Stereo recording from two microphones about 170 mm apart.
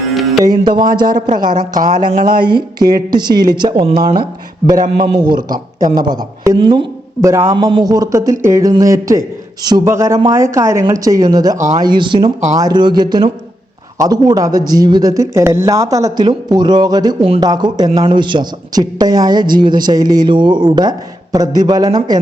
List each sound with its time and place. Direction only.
0.1 s music: centre (ahead or behind)
0.4 s speech: 25° right (ahead or behind)
1.0 s a woman's voice: 55° right (ahead or behind)
2.4 s a man's voice: 25° right (ahead or behind)
7.5 s speech: 30° right (ahead or behind)
11.5 s a woman's voice: 45° right (ahead or behind)
11.8 s speech: 25° right (ahead or behind)